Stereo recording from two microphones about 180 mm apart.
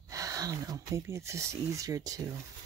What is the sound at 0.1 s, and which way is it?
Speech, 20° right (ahead or behind).